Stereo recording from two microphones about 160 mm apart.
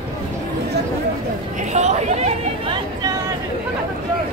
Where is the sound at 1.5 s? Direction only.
45° right (ahead or behind).